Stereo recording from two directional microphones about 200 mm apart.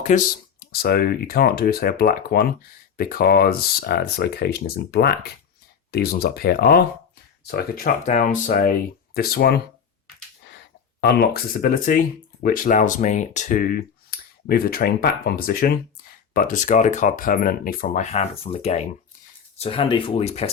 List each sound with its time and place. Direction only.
0.1 s speech: 35° left (ahead or behind)
0.7 s speech: 50° left (ahead or behind)
11.0 s speech: 50° left (ahead or behind); by 20.5 s 30° left (ahead or behind)